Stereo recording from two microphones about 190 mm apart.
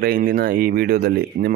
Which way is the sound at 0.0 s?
50° right (ahead or behind).